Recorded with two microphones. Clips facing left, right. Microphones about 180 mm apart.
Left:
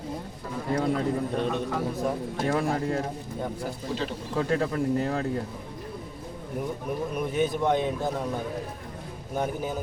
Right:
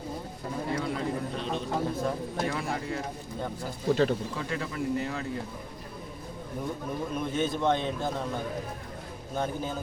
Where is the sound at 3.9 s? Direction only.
55° right (ahead or behind).